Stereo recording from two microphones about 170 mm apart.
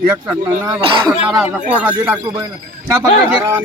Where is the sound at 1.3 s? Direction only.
5° right (ahead or behind).